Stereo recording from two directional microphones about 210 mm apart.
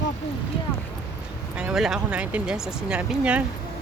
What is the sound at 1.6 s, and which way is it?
Speech, 5° right (ahead or behind).